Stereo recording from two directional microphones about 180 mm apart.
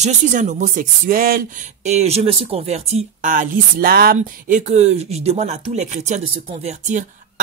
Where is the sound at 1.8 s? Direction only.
35° right (ahead or behind); by 4.2 s 55° right (ahead or behind).